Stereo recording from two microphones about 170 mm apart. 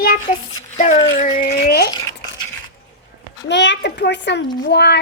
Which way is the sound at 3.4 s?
90° left.